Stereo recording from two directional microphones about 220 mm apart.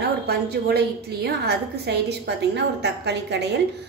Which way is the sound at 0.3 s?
45° right (ahead or behind).